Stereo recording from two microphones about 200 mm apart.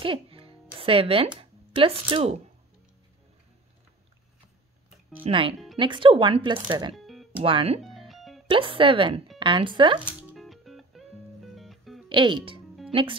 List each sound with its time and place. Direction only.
0.0 s music: 25° right (ahead or behind)
1.4 s speech: 25° right (ahead or behind)
5.2 s speech: 25° right (ahead or behind)
8.1 s music: centre (ahead or behind)
8.5 s speech: 25° right (ahead or behind)
10.0 s music: centre (ahead or behind)
12.1 s speech: 25° right (ahead or behind)